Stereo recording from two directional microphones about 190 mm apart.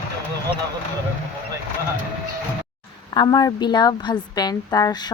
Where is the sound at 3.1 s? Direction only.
20° left (ahead or behind).